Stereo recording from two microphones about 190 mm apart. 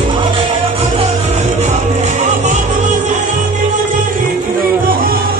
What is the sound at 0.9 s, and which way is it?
Music, 35° right (ahead or behind).